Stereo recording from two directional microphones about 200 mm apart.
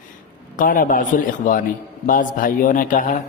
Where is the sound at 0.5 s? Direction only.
45° left (ahead or behind).